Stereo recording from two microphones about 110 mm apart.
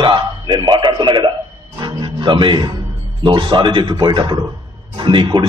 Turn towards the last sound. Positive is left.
turn(degrees=-45)  # may be behind; listen again after turning